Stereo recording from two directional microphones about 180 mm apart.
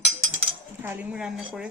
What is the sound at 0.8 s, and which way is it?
Speech, 10° right (ahead or behind).